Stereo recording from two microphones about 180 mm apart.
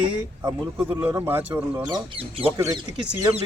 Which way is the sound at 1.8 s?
25° right (ahead or behind).